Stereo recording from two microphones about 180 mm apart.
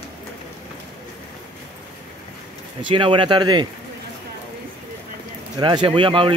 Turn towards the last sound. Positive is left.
turn(degrees=-30)  # may be behind; listen again after turning